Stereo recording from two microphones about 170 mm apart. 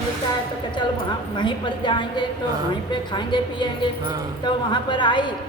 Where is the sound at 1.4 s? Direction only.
30° left (ahead or behind).